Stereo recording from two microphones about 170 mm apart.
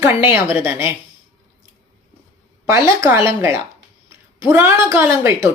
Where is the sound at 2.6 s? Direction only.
15° right (ahead or behind).